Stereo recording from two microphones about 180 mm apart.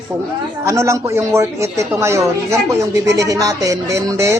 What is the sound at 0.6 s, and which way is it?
A woman's voice, 15° right (ahead or behind).